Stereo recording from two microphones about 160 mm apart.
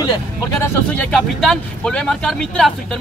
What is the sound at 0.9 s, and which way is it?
Speech, centre (ahead or behind).